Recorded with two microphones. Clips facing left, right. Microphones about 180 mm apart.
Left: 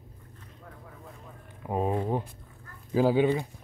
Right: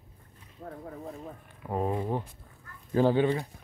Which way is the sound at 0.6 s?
40° right (ahead or behind).